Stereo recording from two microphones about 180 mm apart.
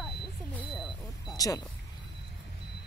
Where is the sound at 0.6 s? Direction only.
Centre (ahead or behind).